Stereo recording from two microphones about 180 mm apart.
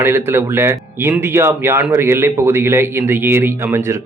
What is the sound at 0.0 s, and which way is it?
Speech, 15° right (ahead or behind).